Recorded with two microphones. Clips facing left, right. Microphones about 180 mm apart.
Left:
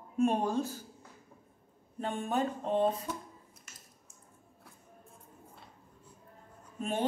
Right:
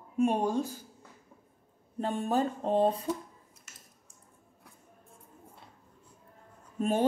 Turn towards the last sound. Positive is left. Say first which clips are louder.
# right 5 dB
turn(degrees=-40)  # may be behind; listen again after turning